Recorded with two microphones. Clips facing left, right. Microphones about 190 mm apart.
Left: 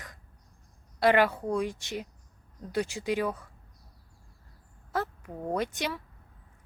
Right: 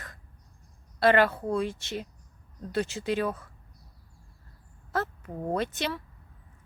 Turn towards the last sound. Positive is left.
turn(degrees=15)  # may be behind; listen again after turning